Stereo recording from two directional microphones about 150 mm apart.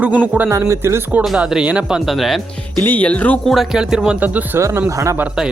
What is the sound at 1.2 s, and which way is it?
Speech, centre (ahead or behind).